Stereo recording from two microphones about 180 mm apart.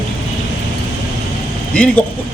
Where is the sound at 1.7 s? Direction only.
10° left (ahead or behind).